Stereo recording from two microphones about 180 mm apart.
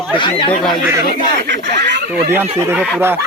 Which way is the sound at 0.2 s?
30° left (ahead or behind).